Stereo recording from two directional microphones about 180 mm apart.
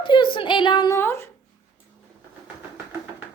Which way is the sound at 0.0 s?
25° left (ahead or behind).